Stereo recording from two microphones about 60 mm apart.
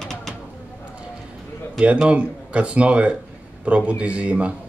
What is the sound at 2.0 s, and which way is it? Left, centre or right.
Speech, right.